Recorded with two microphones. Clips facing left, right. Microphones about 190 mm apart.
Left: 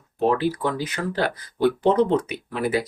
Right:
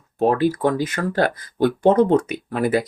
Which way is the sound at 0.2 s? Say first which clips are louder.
Right 3 dB; 50° right (ahead or behind).